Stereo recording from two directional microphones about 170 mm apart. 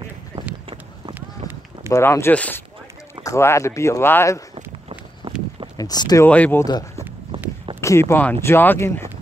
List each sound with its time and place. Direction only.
0.3 s a sound: 40° right (ahead or behind)
1.4 s run: 45° right (ahead or behind)
1.9 s speech: 15° left (ahead or behind)
4.6 s walk: 35° right (ahead or behind)
5.8 s speech: 25° left (ahead or behind)
6.2 s speech: 10° left (ahead or behind)
6.6 s speech: 20° left (ahead or behind)